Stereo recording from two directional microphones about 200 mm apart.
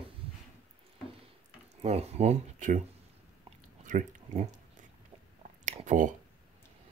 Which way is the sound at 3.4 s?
40° right (ahead or behind).